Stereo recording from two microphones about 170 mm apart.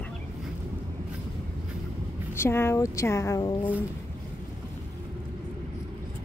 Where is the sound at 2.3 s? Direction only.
15° left (ahead or behind).